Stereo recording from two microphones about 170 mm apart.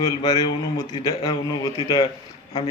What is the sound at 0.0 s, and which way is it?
A man's voice, 25° left (ahead or behind).